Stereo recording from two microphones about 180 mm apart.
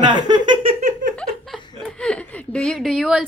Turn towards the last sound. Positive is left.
turn(degrees=0)  # may be behind; listen again after turning